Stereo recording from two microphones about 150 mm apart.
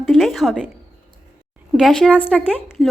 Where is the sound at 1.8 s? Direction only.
Centre (ahead or behind).